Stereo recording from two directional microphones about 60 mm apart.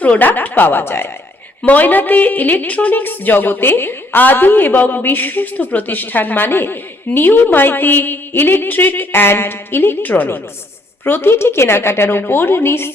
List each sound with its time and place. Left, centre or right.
0.0 s a woman's voice: left